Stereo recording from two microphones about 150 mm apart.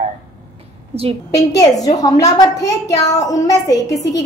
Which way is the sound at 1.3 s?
25° left (ahead or behind).